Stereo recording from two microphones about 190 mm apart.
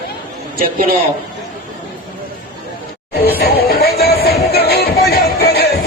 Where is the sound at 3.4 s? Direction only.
55° left (ahead or behind).